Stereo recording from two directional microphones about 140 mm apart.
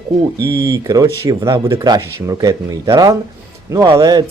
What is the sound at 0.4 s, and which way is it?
Speech, 20° right (ahead or behind).